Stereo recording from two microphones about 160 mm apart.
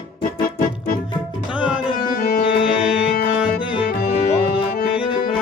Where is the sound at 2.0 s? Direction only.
65° left (ahead or behind).